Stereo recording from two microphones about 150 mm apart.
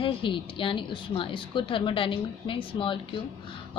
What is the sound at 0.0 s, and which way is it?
A woman's voice, 35° left (ahead or behind).